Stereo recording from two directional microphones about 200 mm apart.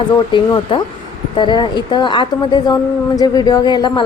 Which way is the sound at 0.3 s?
25° left (ahead or behind).